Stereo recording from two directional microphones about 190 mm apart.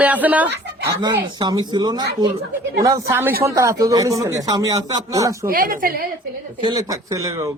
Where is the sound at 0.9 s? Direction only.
20° right (ahead or behind).